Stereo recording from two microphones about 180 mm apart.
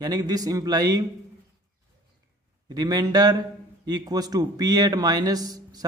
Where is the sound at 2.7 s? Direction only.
20° right (ahead or behind).